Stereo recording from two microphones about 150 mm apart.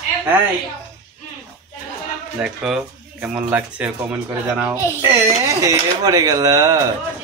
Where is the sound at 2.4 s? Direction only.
5° right (ahead or behind).